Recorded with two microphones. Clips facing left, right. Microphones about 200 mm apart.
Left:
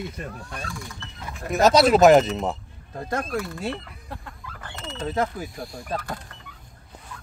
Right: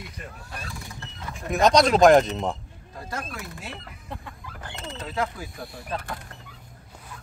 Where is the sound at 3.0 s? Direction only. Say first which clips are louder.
Left 6 dB; 55° left (ahead or behind).